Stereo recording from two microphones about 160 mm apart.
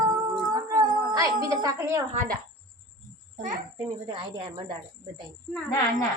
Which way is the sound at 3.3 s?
55° right (ahead or behind).